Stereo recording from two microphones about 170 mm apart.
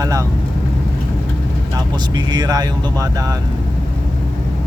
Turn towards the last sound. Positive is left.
turn(degrees=-20)  # may be behind; listen again after turning